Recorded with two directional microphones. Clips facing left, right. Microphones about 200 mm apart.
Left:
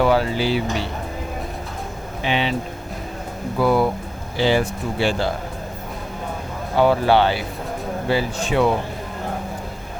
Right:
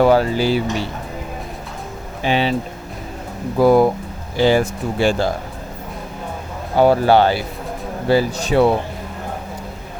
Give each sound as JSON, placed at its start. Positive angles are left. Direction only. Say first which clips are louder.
{"t": 0.0, "sound": "speech", "louder": "right 4 dB", "side_deg": -45}
{"t": 2.2, "sound": "speech", "louder": "right 4 dB", "side_deg": -40}
{"t": 3.6, "sound": "speech", "louder": "right 6 dB", "side_deg": -40}
{"t": 6.7, "sound": "speech", "louder": "right 3 dB", "side_deg": -40}